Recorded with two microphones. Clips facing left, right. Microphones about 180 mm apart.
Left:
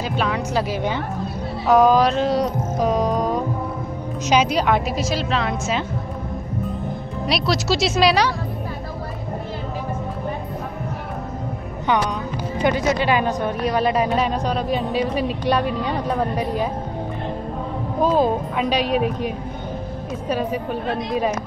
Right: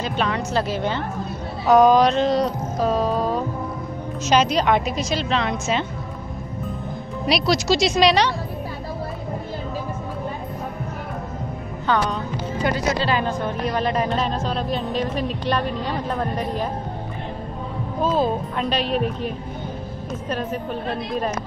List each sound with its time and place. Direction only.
0.0 s speech: 5° left (ahead or behind)
1.7 s music: 5° left (ahead or behind)
4.3 s a woman's voice: 10° left (ahead or behind)
7.2 s a woman's voice: centre (ahead or behind)
12.6 s speech: 15° left (ahead or behind)
18.0 s speech: 15° left (ahead or behind)